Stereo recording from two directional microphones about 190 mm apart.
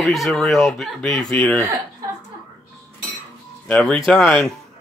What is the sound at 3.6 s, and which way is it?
Speech, 5° left (ahead or behind).